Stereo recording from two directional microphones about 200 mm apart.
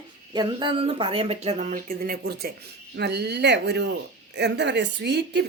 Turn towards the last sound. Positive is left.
turn(degrees=-55)  # may be behind; listen again after turning